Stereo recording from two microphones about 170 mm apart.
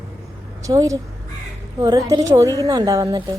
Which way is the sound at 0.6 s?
20° right (ahead or behind).